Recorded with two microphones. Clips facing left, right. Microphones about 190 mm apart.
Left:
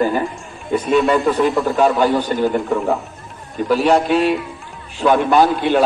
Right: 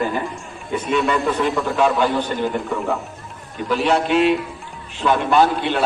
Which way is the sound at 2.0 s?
40° left (ahead or behind).